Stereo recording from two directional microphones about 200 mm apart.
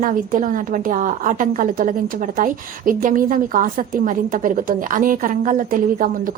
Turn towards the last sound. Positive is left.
turn(degrees=-45)  # may be behind; listen again after turning